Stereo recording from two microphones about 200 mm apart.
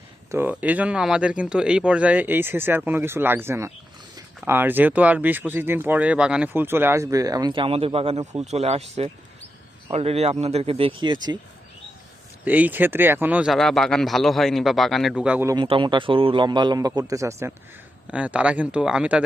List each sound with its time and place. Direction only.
0.3 s a man's voice: 10° right (ahead or behind)
12.5 s speech: 10° right (ahead or behind)
15.5 s a man's voice: 25° right (ahead or behind); by 19.2 s 5° right (ahead or behind)